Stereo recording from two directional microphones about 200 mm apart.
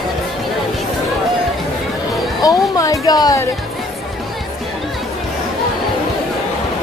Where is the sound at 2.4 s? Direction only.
20° left (ahead or behind).